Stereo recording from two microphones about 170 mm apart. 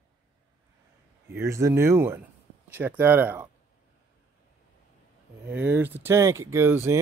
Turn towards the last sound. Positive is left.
turn(degrees=-15)  # may be behind; listen again after turning